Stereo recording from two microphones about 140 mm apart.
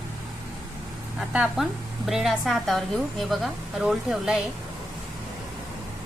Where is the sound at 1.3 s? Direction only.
Centre (ahead or behind).